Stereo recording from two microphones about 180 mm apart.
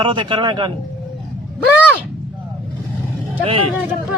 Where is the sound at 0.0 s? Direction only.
25° right (ahead or behind).